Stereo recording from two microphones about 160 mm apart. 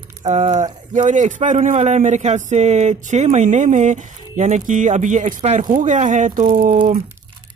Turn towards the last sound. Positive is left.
turn(degrees=-60)  # may be behind; listen again after turning